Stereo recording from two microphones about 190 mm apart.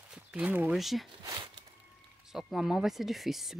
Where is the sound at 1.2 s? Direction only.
20° right (ahead or behind).